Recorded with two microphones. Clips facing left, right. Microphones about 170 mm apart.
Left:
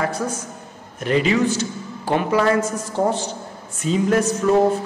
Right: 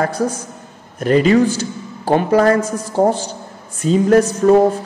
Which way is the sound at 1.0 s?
45° right (ahead or behind).